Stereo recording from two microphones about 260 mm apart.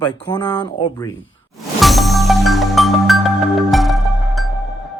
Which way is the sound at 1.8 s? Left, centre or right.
Centre.